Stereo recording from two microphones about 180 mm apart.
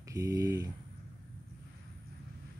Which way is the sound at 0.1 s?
15° right (ahead or behind).